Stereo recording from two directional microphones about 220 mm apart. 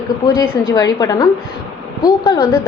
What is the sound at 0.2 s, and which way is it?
A woman's voice, 15° left (ahead or behind).